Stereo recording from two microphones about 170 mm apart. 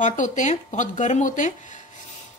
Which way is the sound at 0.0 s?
45° left (ahead or behind).